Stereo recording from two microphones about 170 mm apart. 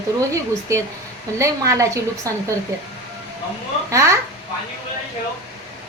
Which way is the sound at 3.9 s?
15° right (ahead or behind).